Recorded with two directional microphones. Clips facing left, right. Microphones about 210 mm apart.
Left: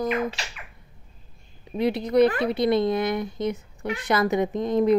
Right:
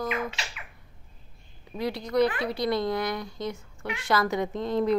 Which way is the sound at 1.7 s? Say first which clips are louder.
Left 6 dB; 20° left (ahead or behind).